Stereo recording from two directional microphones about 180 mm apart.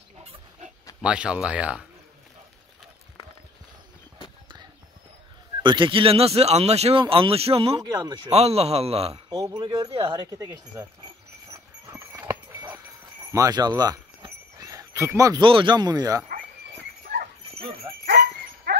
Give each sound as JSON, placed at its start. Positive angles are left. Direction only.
{"t": 0.2, "sound": "pig", "side_deg": -35}
{"t": 1.0, "sound": "speech", "side_deg": -5}
{"t": 5.6, "sound": "speech", "side_deg": -25}
{"t": 8.3, "sound": "speech", "side_deg": -35}
{"t": 9.3, "sound": "speech", "side_deg": -20}
{"t": 9.9, "sound": "speech", "side_deg": -30}
{"t": 10.3, "sound": "speech", "side_deg": -10}
{"t": 11.9, "sound": "a sound", "side_deg": -15}
{"t": 13.3, "sound": "speech", "side_deg": -20}
{"t": 17.9, "sound": "dog", "side_deg": -25}
{"t": 18.7, "sound": "dog", "side_deg": -60}